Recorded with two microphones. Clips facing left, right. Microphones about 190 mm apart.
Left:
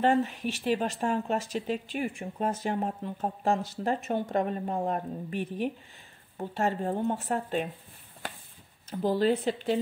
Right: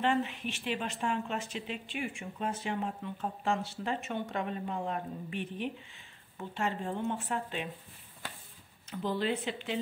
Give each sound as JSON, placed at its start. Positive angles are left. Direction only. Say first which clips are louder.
{"t": 0.0, "sound": "speech", "louder": "left 5 dB", "side_deg": 40}
{"t": 8.9, "sound": "speech", "louder": "left 7 dB", "side_deg": 40}